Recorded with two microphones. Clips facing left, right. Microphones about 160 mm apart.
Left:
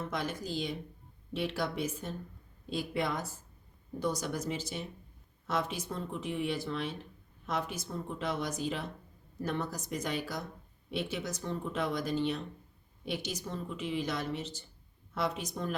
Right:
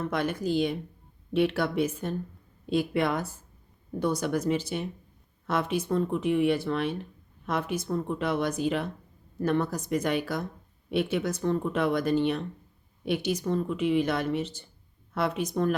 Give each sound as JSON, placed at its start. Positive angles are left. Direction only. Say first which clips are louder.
{"t": 0.1, "sound": "speech", "louder": "right 8 dB", "side_deg": -60}